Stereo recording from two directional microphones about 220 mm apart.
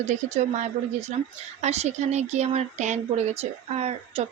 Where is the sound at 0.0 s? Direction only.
35° right (ahead or behind).